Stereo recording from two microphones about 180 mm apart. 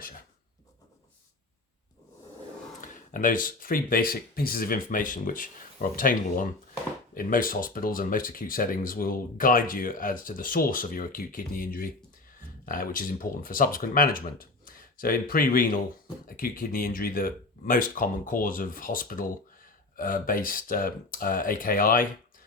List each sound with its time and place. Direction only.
2.8 s speech: 45° left (ahead or behind)